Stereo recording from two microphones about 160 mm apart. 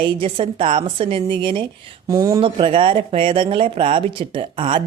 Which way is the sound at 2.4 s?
35° right (ahead or behind).